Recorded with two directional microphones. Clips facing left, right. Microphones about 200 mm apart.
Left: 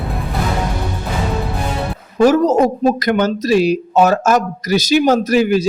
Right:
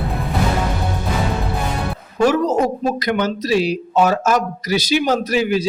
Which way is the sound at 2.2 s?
40° left (ahead or behind).